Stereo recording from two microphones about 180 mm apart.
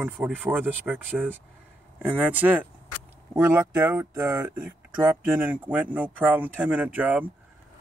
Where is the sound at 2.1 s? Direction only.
10° right (ahead or behind).